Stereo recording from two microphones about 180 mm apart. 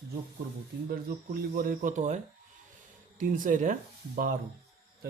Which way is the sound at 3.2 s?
45° right (ahead or behind).